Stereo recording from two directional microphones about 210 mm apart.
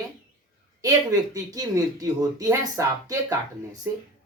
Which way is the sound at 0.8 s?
15° right (ahead or behind).